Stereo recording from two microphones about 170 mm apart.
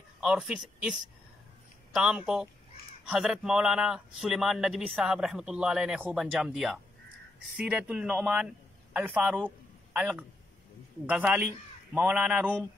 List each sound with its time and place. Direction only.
0.2 s a man's voice: 5° right (ahead or behind)
2.0 s a man's voice: 5° right (ahead or behind)